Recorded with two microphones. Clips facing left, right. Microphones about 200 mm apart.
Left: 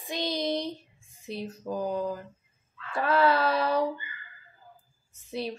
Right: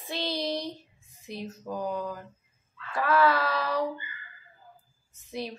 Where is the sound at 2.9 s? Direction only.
25° left (ahead or behind).